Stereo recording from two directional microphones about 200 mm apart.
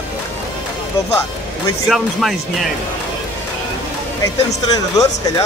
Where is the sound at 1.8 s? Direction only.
Centre (ahead or behind).